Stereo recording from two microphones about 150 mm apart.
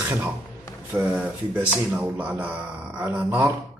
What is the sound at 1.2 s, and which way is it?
Speech, 10° right (ahead or behind).